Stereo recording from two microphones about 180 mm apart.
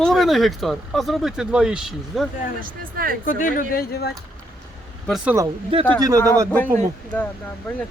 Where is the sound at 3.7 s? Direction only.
60° left (ahead or behind).